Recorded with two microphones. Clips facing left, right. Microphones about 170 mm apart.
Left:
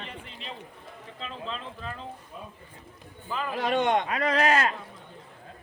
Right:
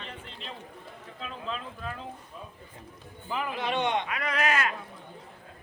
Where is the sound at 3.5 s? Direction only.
45° left (ahead or behind).